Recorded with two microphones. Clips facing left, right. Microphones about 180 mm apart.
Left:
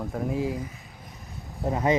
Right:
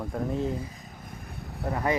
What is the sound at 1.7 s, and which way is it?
Speech, 20° left (ahead or behind).